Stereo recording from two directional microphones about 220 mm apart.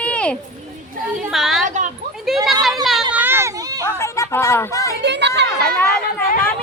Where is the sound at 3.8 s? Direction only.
10° left (ahead or behind).